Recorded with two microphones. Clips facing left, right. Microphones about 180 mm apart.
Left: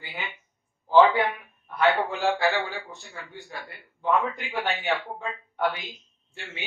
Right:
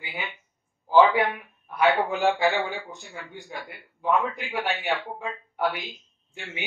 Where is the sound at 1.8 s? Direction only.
20° right (ahead or behind).